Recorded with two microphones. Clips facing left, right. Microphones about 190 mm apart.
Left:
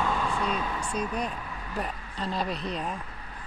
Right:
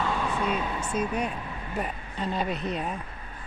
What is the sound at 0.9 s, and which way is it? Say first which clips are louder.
Speech: right 4 dB; 10° right (ahead or behind).